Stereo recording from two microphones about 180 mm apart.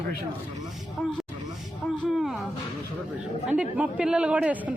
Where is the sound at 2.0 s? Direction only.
Centre (ahead or behind).